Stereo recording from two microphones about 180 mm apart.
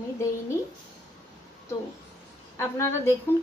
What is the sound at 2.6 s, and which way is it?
Speech, 15° left (ahead or behind).